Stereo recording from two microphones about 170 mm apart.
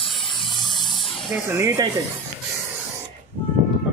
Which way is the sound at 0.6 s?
Centre (ahead or behind).